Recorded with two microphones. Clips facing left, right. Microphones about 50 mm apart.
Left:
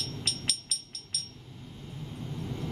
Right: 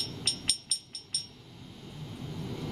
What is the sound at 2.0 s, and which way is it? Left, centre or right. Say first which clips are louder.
Vehicle: left 1 dB; centre.